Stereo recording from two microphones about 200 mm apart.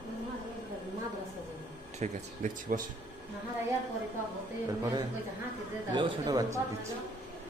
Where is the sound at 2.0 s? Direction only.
40° right (ahead or behind).